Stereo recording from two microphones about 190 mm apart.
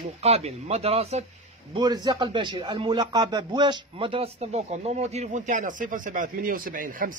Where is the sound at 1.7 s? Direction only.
20° right (ahead or behind).